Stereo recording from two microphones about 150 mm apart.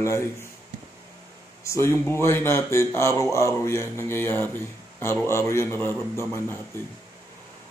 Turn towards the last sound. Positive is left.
turn(degrees=15)  # may be behind; listen again after turning